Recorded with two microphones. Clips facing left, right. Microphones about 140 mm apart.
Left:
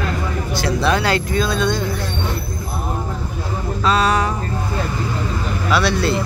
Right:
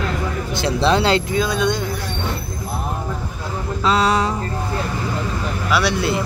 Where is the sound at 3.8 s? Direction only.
20° right (ahead or behind).